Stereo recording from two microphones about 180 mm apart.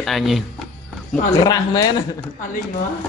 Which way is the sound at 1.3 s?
20° left (ahead or behind).